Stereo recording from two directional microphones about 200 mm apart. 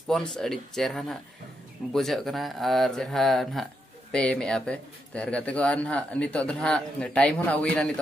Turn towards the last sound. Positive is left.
turn(degrees=5)  # may be behind; listen again after turning